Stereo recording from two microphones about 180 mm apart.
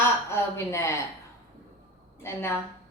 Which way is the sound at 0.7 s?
15° left (ahead or behind).